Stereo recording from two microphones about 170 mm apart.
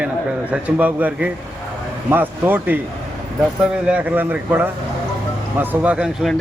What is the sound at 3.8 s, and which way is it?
Speech, 10° right (ahead or behind).